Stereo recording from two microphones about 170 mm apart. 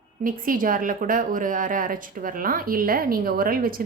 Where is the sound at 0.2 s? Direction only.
55° right (ahead or behind).